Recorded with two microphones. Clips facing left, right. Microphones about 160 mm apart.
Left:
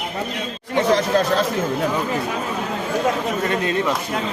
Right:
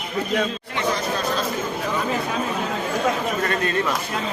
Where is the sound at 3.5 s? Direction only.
20° left (ahead or behind).